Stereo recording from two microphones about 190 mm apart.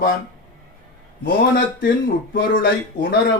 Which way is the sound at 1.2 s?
50° left (ahead or behind).